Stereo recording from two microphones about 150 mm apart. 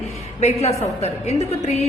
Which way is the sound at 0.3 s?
45° left (ahead or behind).